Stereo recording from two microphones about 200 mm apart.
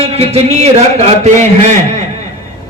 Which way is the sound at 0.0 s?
30° right (ahead or behind).